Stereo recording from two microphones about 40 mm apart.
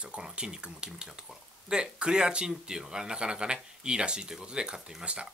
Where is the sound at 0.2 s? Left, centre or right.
Centre.